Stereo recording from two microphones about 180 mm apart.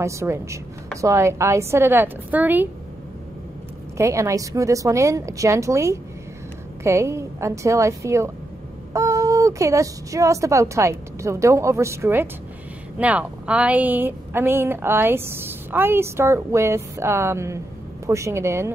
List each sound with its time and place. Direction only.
0.0 s a woman's voice: 15° right (ahead or behind)
4.0 s a woman's voice: 15° right (ahead or behind)